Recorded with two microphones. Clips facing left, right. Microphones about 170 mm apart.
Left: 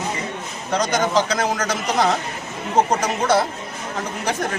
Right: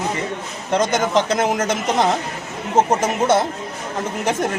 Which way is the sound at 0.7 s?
25° right (ahead or behind).